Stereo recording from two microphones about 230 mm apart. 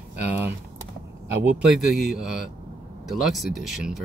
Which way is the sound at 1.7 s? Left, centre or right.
Centre.